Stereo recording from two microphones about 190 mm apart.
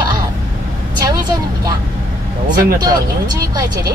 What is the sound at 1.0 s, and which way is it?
Speech, 20° right (ahead or behind).